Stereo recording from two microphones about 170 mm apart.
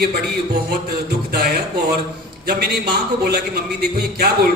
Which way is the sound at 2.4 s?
65° right (ahead or behind).